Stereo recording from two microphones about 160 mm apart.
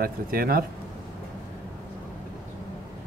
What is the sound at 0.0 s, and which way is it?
Speech, 65° right (ahead or behind).